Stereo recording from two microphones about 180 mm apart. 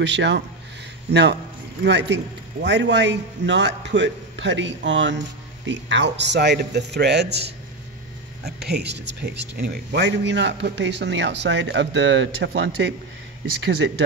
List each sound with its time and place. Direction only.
0.0 s a man's voice: 75° right (ahead or behind)